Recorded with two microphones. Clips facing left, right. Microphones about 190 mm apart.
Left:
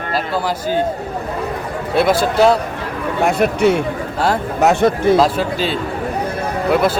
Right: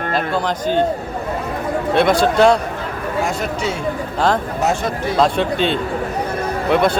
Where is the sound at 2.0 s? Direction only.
5° left (ahead or behind).